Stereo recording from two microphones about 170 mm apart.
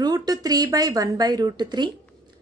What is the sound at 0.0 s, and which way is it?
Speech, 20° right (ahead or behind).